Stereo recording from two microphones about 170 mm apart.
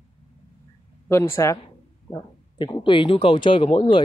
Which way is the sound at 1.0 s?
15° left (ahead or behind).